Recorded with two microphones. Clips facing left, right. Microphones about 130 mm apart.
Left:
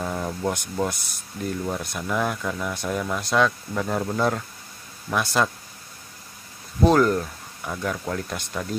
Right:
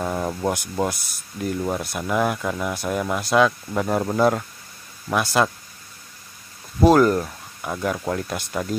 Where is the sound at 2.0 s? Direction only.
10° right (ahead or behind).